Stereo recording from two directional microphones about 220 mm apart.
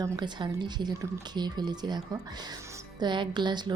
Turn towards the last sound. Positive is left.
turn(degrees=-20)  # may be behind; listen again after turning